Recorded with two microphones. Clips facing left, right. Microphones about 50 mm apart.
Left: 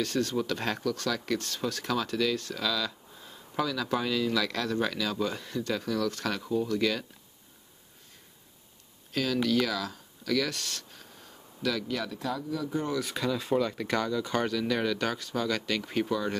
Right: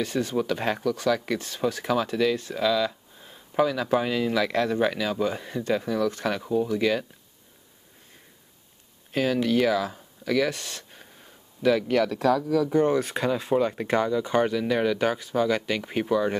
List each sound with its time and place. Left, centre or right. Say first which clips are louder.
0.0 s speech: right 3 dB; centre
9.1 s speech: right 4 dB; right
12.1 s speech: right 11 dB; right
12.9 s speech: right 5 dB; right; by 16.3 s centre